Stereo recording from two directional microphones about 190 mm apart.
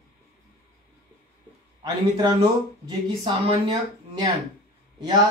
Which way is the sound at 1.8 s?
20° right (ahead or behind).